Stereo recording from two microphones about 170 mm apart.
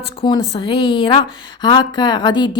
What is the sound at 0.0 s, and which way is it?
Speech, 30° left (ahead or behind).